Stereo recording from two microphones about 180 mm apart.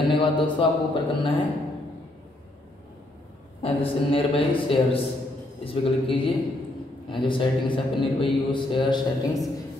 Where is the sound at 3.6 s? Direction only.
30° left (ahead or behind).